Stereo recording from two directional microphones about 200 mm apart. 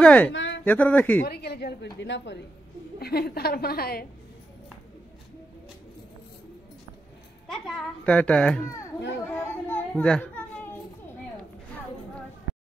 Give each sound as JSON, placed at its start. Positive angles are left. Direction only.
{"t": 0.0, "sound": "a man's voice", "side_deg": 5}
{"t": 0.3, "sound": "a sound", "side_deg": 65}
{"t": 0.7, "sound": "a man's voice", "side_deg": 10}
{"t": 1.2, "sound": "a woman's voice", "side_deg": 55}
{"t": 7.4, "sound": "a child's voice", "side_deg": 0}
{"t": 9.3, "sound": "a sound", "side_deg": 10}